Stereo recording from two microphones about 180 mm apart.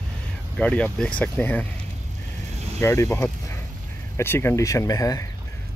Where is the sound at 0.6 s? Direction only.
5° left (ahead or behind).